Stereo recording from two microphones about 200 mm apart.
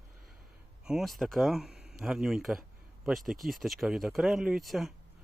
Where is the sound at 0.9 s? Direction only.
Centre (ahead or behind).